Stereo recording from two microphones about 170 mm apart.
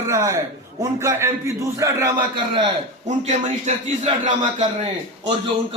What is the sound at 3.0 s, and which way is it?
A man's voice, 45° right (ahead or behind).